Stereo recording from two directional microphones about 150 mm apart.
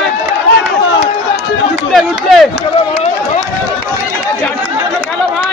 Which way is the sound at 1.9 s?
Centre (ahead or behind).